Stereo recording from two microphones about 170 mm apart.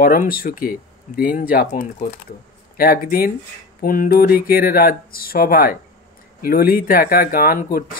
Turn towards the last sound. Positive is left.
turn(degrees=60)  # may be behind; listen again after turning